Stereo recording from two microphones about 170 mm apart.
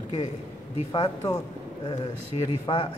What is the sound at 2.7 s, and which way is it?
Speech, 25° left (ahead or behind).